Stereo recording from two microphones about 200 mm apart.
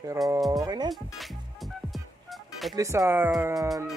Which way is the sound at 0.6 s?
20° right (ahead or behind).